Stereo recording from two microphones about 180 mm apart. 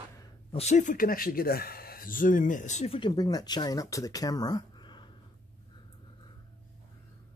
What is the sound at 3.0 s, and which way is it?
Speech, 25° left (ahead or behind).